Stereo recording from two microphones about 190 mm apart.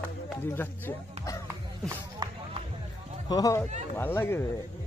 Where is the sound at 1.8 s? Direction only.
25° right (ahead or behind).